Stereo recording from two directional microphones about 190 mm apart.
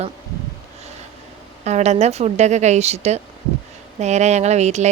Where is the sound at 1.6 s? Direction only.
35° right (ahead or behind).